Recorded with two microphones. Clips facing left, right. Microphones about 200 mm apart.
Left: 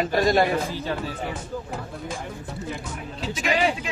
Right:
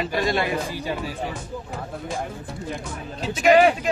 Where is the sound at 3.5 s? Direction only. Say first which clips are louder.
Right 8 dB; 55° right (ahead or behind).